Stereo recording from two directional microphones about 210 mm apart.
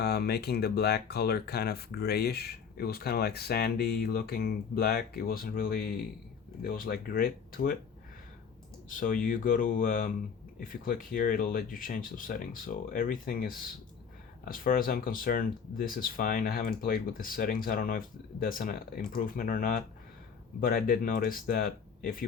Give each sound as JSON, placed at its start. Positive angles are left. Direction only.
{"t": 0.0, "sound": "speech", "side_deg": 50}
{"t": 8.9, "sound": "speech", "side_deg": 40}